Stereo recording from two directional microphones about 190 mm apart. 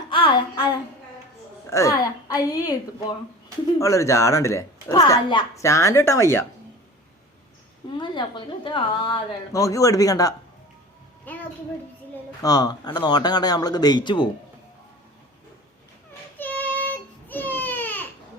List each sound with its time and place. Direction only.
0.1 s music: 25° left (ahead or behind)
1.7 s a woman's voice: 15° left (ahead or behind)
7.9 s a woman's voice: 25° left (ahead or behind)
11.3 s a sound: 10° left (ahead or behind)
12.4 s speech: 20° left (ahead or behind)
16.4 s baby cry: 10° left (ahead or behind)